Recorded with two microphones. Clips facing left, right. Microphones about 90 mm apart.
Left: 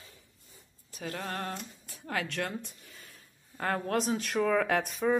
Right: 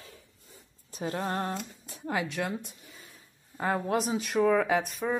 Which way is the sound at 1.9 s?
15° right (ahead or behind).